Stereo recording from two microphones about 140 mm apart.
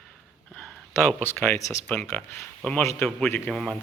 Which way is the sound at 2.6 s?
10° left (ahead or behind).